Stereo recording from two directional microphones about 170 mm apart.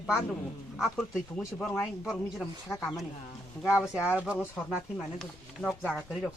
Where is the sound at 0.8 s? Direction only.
Centre (ahead or behind).